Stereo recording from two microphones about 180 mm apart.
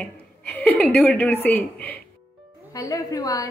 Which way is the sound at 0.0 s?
10° left (ahead or behind).